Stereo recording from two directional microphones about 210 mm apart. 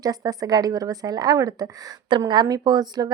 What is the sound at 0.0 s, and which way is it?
A woman's voice, 15° right (ahead or behind).